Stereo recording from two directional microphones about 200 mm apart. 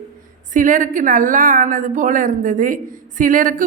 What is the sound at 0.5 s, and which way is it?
A woman's voice, 40° right (ahead or behind).